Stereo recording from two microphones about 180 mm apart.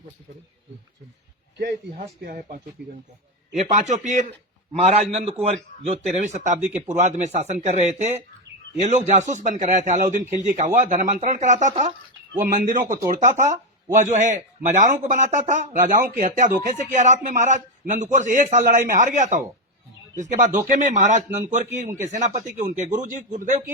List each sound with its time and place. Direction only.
2.0 s speech: 50° right (ahead or behind)
2.8 s speech: 5° right (ahead or behind)
3.5 s a man's voice: 40° right (ahead or behind)